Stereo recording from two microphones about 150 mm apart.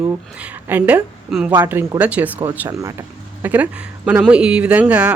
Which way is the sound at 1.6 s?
15° right (ahead or behind).